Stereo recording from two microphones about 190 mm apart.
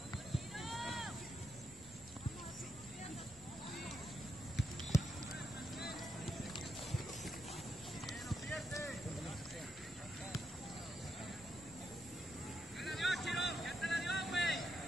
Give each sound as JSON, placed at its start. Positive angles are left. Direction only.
{"t": 0.3, "sound": "a sound", "side_deg": 0}
{"t": 4.9, "sound": "clip-clop", "side_deg": 15}
{"t": 5.3, "sound": "vehicle", "side_deg": 55}
{"t": 8.1, "sound": "clip-clop", "side_deg": 0}
{"t": 12.8, "sound": "vehicle", "side_deg": 0}